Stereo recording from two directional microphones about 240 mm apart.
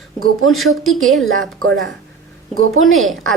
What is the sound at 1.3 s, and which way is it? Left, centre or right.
Speech, right.